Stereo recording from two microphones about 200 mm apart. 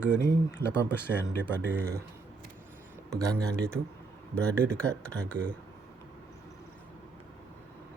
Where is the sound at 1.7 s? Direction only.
10° right (ahead or behind).